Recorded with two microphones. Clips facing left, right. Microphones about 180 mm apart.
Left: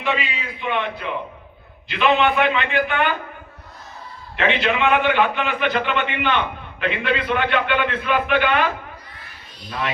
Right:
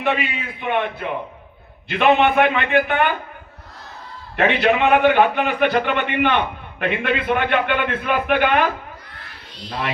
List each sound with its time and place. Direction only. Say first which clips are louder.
0.0 s a man's voice: right 3 dB; 55° right (ahead or behind)
4.4 s a man's voice: right 3 dB; 45° right (ahead or behind)